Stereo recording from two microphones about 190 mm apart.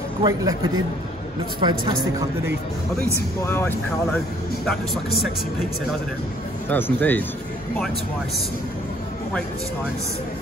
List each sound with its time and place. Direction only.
0.2 s speech: 20° right (ahead or behind)
3.4 s speech: 15° left (ahead or behind)
6.7 s speech: 10° left (ahead or behind)